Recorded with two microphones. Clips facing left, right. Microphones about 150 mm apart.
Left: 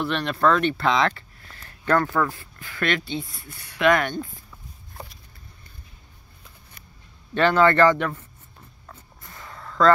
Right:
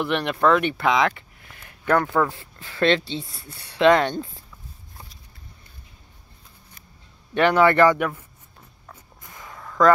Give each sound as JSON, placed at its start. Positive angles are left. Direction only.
{"t": 0.0, "sound": "speech", "side_deg": -15}
{"t": 7.3, "sound": "speech", "side_deg": -15}
{"t": 8.9, "sound": "a sound", "side_deg": -15}